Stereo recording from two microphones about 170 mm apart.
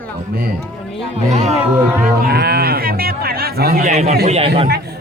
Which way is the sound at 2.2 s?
70° right (ahead or behind).